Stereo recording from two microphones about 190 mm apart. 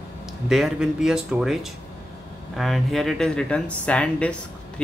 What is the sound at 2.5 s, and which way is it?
Speech, centre (ahead or behind).